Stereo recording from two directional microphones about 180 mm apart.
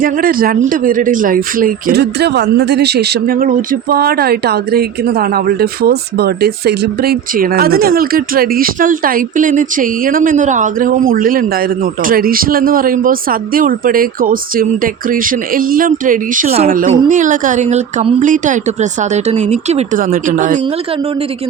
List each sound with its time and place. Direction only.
0.0 s speech: 50° right (ahead or behind)